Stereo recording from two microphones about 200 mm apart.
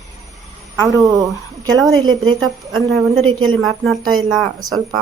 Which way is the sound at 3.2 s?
90° right.